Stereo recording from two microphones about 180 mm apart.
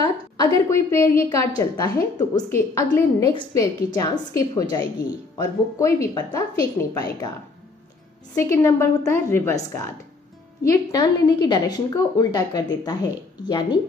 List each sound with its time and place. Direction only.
0.0 s a woman's voice: 20° left (ahead or behind)
8.4 s a woman's voice: 15° left (ahead or behind)